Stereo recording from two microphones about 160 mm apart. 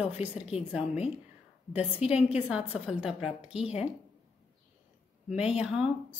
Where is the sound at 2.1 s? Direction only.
5° right (ahead or behind).